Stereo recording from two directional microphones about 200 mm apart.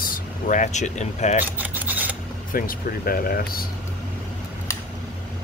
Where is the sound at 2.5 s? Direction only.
45° left (ahead or behind).